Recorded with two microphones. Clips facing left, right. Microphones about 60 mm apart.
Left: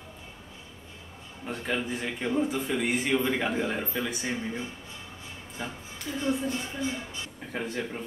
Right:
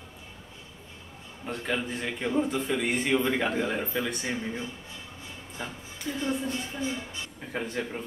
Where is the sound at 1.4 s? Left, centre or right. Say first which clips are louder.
Even; centre.